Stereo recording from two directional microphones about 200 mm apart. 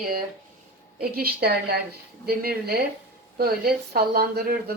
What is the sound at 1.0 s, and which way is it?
Speech, 50° right (ahead or behind).